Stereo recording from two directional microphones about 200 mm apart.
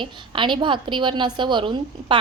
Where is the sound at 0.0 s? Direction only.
25° right (ahead or behind).